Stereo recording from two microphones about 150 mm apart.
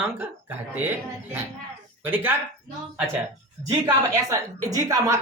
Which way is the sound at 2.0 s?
15° right (ahead or behind).